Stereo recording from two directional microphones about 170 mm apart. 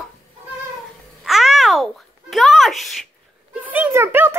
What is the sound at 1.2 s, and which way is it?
Babbling, centre (ahead or behind).